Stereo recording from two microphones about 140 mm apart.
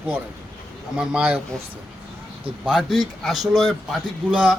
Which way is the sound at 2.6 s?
Centre (ahead or behind).